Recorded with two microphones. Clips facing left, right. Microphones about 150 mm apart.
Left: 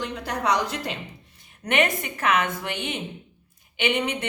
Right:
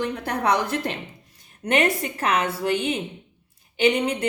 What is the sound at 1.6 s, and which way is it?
Speech, 35° right (ahead or behind).